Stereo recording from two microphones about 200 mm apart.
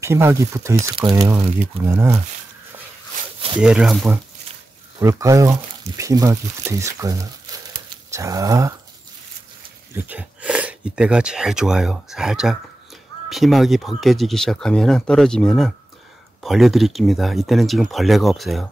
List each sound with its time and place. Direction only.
0.0 s speech: 15° right (ahead or behind)
1.3 s speech: 10° right (ahead or behind)
3.6 s speech: 5° right (ahead or behind)
4.9 s speech: 15° right (ahead or behind)
9.9 s speech: 10° right (ahead or behind)